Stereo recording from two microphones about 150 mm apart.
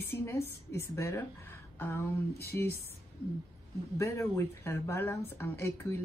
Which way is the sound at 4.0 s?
20° left (ahead or behind).